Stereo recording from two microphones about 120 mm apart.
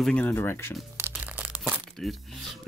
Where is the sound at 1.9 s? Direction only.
Centre (ahead or behind).